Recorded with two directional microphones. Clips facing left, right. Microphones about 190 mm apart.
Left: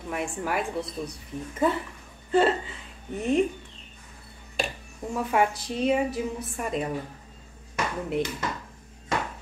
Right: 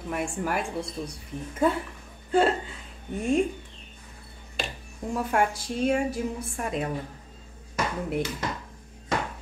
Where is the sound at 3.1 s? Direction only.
10° right (ahead or behind).